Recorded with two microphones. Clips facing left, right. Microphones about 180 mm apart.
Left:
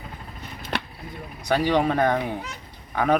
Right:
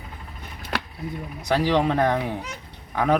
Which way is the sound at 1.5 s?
Centre (ahead or behind).